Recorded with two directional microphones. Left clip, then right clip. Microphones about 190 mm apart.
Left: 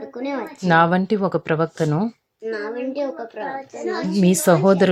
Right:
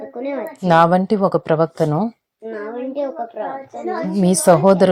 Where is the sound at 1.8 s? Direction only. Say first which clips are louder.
Right 3 dB; 10° left (ahead or behind).